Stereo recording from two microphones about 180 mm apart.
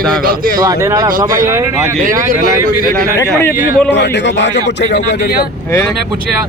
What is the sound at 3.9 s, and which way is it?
Speech, 80° left.